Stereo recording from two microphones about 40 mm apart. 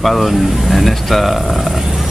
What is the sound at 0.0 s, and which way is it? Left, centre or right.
Speech, centre.